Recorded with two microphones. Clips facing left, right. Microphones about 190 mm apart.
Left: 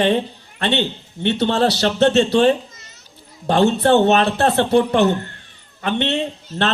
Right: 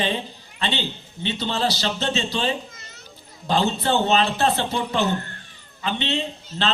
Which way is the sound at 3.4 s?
60° left (ahead or behind).